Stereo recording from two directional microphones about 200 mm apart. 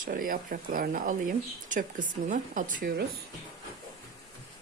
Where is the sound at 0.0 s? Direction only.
45° right (ahead or behind).